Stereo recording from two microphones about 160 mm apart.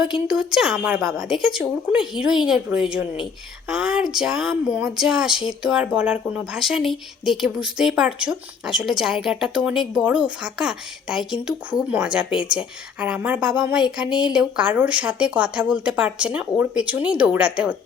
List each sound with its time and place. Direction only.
0.0 s speech: 5° right (ahead or behind)
14.1 s speech: 30° left (ahead or behind)
14.3 s speech: 5° right (ahead or behind)